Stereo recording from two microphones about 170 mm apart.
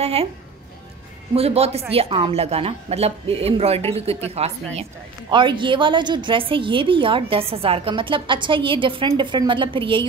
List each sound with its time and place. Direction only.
0.0 s speech: 35° right (ahead or behind)
1.3 s a woman's voice: 35° right (ahead or behind)